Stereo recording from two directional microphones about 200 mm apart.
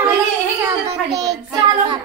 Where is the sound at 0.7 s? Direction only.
30° right (ahead or behind).